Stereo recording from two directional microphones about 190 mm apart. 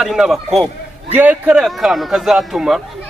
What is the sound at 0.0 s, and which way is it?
A man's voice, centre (ahead or behind).